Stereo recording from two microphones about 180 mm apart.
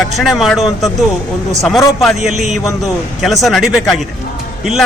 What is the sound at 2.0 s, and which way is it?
A man's voice, centre (ahead or behind).